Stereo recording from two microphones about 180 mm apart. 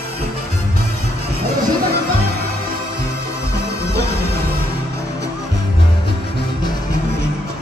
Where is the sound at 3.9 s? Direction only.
65° right (ahead or behind).